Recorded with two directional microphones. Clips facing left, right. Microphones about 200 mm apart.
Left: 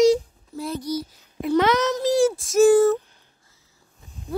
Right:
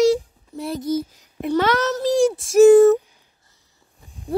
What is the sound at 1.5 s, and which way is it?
Child singing, 15° left (ahead or behind).